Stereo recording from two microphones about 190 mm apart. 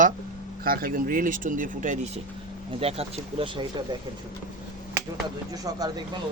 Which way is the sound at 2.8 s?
30° right (ahead or behind).